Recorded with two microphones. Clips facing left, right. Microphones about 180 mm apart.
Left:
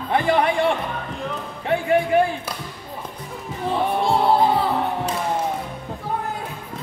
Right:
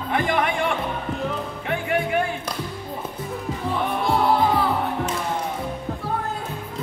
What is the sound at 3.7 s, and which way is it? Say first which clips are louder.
Music: left 3 dB; 30° left (ahead or behind).